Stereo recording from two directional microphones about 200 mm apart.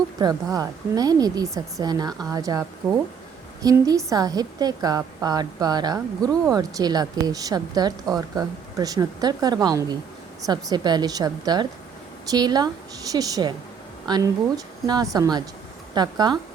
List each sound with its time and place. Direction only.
0.2 s a woman's voice: 20° right (ahead or behind)